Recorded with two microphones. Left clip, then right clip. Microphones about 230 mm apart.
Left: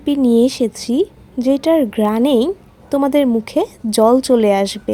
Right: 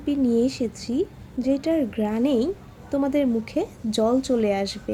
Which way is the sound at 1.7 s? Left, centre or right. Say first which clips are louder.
Left 9 dB; left.